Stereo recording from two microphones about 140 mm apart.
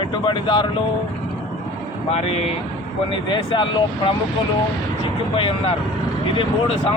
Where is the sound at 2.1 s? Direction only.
45° left (ahead or behind).